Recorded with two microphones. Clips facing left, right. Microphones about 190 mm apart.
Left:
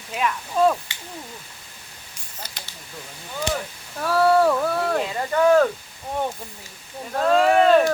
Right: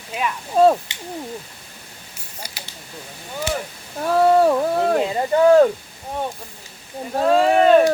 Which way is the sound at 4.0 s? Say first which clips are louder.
Right 3 dB; 20° right (ahead or behind).